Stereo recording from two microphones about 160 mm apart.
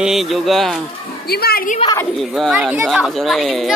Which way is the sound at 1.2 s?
75° left (ahead or behind).